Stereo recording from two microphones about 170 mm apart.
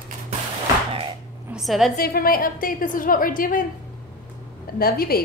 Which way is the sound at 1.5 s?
Centre (ahead or behind).